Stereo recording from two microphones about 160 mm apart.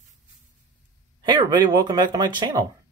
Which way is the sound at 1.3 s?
25° right (ahead or behind).